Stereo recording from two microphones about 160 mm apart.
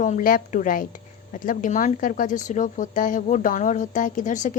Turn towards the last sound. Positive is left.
turn(degrees=50)  # may be behind; listen again after turning